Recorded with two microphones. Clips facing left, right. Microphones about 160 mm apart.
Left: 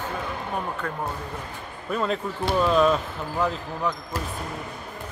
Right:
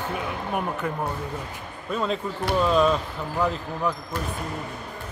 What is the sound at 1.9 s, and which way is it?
Speech, centre (ahead or behind).